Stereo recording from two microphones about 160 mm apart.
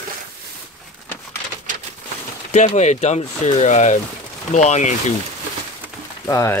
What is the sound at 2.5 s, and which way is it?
Speech, 45° left (ahead or behind).